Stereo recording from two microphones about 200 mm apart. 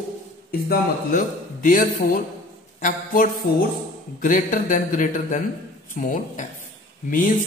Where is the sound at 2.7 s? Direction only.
40° left (ahead or behind).